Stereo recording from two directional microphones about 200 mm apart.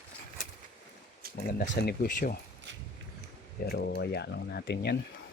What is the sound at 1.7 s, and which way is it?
Speech, 50° left (ahead or behind).